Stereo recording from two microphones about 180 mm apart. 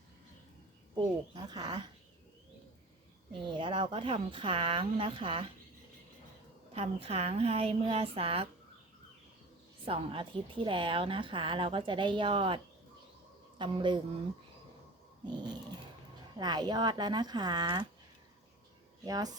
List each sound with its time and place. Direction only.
1.4 s a woman's voice: 25° right (ahead or behind)
3.3 s a woman's voice: 25° right (ahead or behind)
6.7 s a woman's voice: 35° right (ahead or behind)
9.8 s a woman's voice: 30° right (ahead or behind)
13.6 s a woman's voice: 25° right (ahead or behind)
16.4 s a woman's voice: 25° right (ahead or behind)
19.0 s a woman's voice: 20° right (ahead or behind)